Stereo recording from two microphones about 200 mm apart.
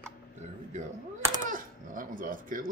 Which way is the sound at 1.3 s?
40° right (ahead or behind).